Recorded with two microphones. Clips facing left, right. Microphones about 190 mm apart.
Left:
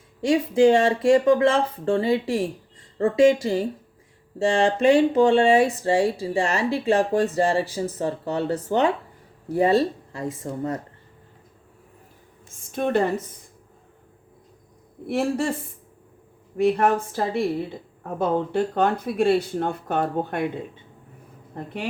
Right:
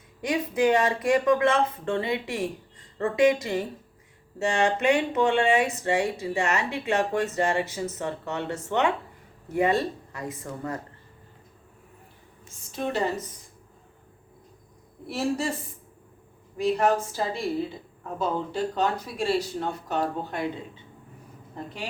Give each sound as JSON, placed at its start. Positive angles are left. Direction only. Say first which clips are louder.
{"t": 0.2, "sound": "speech", "louder": "left 7 dB", "side_deg": 25}
{"t": 12.7, "sound": "speech", "louder": "left 5 dB", "side_deg": 55}
{"t": 15.0, "sound": "speech", "louder": "left 4 dB", "side_deg": 55}
{"t": 16.6, "sound": "speech", "louder": "left 3 dB", "side_deg": 55}
{"t": 21.5, "sound": "a woman's voice", "louder": "left 4 dB", "side_deg": 60}